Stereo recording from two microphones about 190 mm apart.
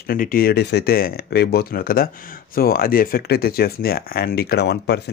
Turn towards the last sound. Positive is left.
turn(degrees=60)  # may be behind; listen again after turning